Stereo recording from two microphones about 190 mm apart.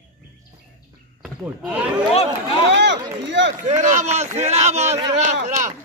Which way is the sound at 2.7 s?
65° right (ahead or behind).